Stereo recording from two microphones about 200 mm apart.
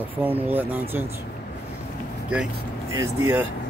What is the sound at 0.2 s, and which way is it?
Speech, 10° right (ahead or behind).